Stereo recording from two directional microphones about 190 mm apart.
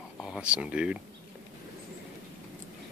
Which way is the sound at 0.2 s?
5° right (ahead or behind).